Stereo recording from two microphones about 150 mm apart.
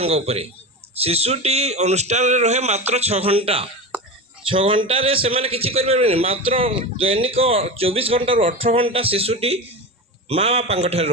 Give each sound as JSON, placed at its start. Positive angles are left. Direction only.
{"t": 0.0, "sound": "a man's voice", "side_deg": -45}